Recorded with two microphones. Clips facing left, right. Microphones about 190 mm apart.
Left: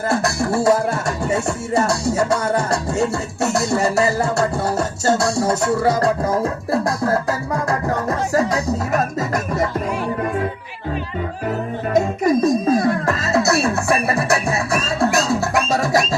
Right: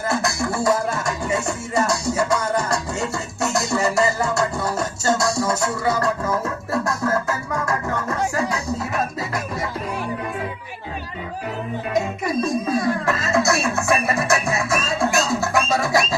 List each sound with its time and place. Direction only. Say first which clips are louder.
0.5 s music: left 5 dB; 35° left (ahead or behind)
11.9 s music: left 6 dB; 40° left (ahead or behind)